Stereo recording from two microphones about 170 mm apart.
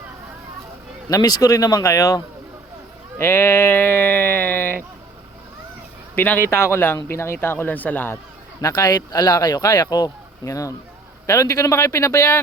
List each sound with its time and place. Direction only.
1.1 s speech: 20° left (ahead or behind)
3.2 s sheep: 15° left (ahead or behind)
6.1 s a man's voice: 10° left (ahead or behind)